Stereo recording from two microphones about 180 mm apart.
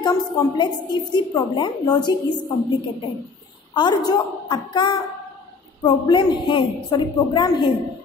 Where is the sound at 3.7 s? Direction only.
25° left (ahead or behind).